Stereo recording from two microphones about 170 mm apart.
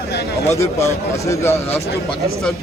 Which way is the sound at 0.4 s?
15° left (ahead or behind).